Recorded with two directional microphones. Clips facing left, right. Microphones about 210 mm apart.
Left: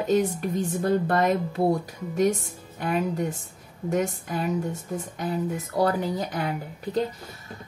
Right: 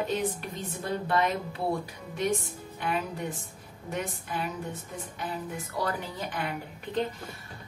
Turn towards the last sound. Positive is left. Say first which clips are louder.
# left 5 dB
turn(degrees=40)  # may be behind; listen again after turning